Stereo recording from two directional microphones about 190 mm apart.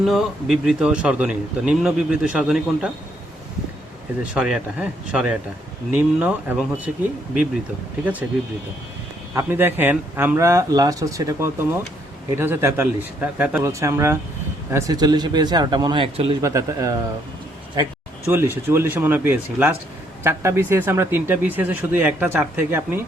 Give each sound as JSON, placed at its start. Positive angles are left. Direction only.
{"t": 0.0, "sound": "a man's voice", "side_deg": 0}
{"t": 4.2, "sound": "a man's voice", "side_deg": -5}
{"t": 9.3, "sound": "speech", "side_deg": -10}
{"t": 16.4, "sound": "speech", "side_deg": -15}
{"t": 18.3, "sound": "speech", "side_deg": -10}